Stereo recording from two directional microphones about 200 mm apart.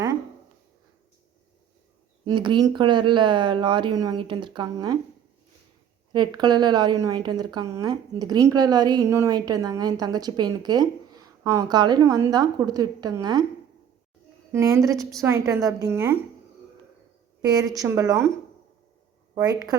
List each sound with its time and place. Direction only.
2.2 s a woman's voice: 25° right (ahead or behind)
6.1 s a woman's voice: 20° right (ahead or behind)
14.5 s a woman's voice: 15° right (ahead or behind)
17.4 s a woman's voice: 20° right (ahead or behind)
19.3 s a woman's voice: 20° right (ahead or behind)